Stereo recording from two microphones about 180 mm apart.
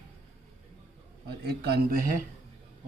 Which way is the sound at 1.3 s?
65° right (ahead or behind).